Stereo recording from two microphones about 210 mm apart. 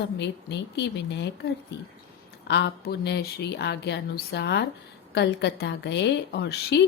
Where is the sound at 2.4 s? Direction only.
55° left (ahead or behind).